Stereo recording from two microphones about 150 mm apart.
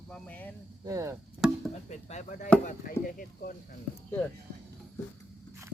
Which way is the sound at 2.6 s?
65° left (ahead or behind).